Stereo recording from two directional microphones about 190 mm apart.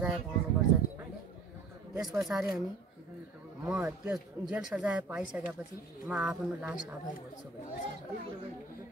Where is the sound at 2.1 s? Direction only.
5° right (ahead or behind).